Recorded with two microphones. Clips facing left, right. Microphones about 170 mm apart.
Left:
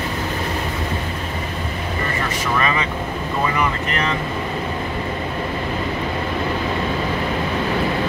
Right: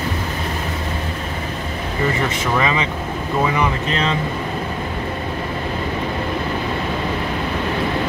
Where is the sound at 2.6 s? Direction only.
20° right (ahead or behind).